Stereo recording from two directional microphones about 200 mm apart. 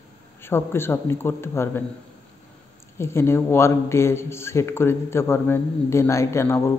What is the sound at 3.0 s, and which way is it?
Speech, 15° left (ahead or behind).